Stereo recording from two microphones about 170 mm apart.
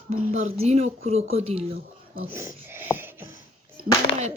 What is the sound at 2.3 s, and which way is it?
Speech, 15° right (ahead or behind).